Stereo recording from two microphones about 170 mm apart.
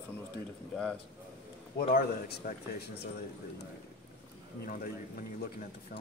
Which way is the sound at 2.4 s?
55° left (ahead or behind).